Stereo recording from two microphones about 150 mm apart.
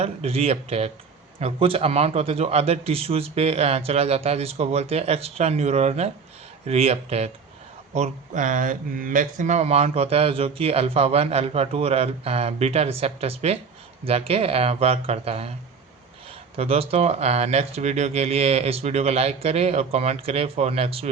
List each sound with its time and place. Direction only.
0.0 s speech: 40° right (ahead or behind)
16.6 s speech: 40° right (ahead or behind)